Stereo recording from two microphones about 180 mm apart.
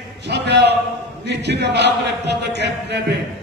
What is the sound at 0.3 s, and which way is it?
A man's voice, 65° right (ahead or behind).